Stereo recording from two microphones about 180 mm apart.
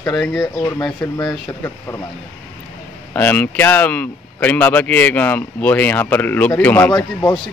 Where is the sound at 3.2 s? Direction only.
10° left (ahead or behind).